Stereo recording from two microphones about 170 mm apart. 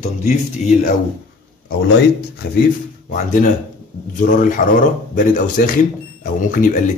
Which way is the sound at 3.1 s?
50° left (ahead or behind).